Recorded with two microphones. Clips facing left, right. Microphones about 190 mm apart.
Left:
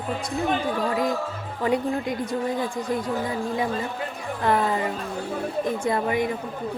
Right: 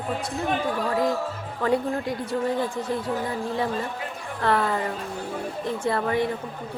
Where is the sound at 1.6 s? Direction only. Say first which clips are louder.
Even; 20° left (ahead or behind).